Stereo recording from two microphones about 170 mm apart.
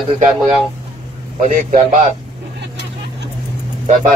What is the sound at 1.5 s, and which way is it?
Speech, 50° right (ahead or behind).